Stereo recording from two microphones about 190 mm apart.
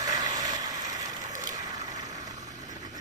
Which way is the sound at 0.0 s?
20° right (ahead or behind).